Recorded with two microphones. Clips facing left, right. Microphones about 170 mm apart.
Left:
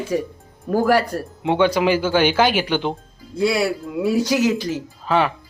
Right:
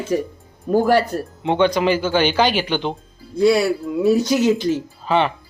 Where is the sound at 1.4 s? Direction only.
10° left (ahead or behind).